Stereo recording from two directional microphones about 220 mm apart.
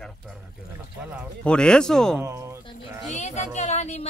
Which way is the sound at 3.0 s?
30° left (ahead or behind).